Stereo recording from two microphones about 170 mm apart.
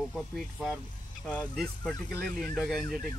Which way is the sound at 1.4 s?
Centre (ahead or behind).